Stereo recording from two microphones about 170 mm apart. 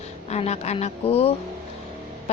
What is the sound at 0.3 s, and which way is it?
A woman's voice, 40° left (ahead or behind).